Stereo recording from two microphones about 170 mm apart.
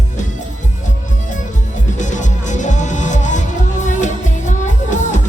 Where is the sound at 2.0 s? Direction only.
45° left (ahead or behind).